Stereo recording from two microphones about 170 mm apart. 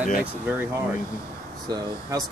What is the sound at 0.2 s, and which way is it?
Speech, 10° right (ahead or behind).